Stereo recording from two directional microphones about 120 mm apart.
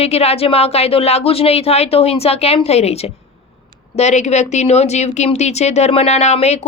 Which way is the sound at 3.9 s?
70° left (ahead or behind).